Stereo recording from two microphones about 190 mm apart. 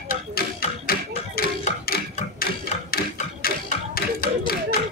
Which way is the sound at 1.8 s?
50° left (ahead or behind).